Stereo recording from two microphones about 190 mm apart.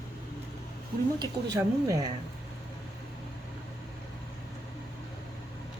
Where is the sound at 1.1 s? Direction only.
15° right (ahead or behind).